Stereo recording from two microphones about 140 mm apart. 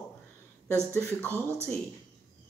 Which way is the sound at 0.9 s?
20° left (ahead or behind).